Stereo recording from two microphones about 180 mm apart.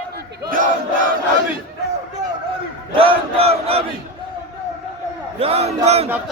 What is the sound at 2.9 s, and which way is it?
Battle cry, 30° right (ahead or behind).